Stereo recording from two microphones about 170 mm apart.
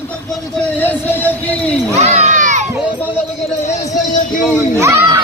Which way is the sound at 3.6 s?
45° left (ahead or behind).